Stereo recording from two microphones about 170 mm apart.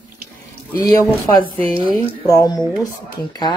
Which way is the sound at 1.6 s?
30° right (ahead or behind).